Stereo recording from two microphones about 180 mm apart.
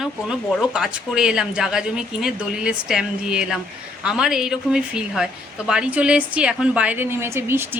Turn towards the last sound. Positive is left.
turn(degrees=-15)  # may be behind; listen again after turning